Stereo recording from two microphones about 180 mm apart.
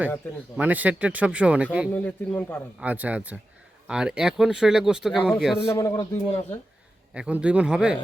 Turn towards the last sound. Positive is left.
turn(degrees=-5)  # may be behind; listen again after turning